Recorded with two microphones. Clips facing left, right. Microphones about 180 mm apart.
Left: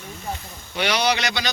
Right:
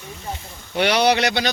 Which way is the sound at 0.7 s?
55° right (ahead or behind).